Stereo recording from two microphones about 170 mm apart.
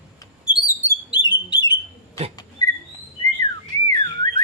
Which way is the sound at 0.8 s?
25° left (ahead or behind).